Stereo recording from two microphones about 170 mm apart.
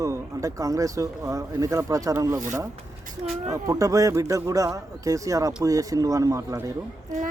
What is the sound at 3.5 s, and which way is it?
Speech, 20° right (ahead or behind).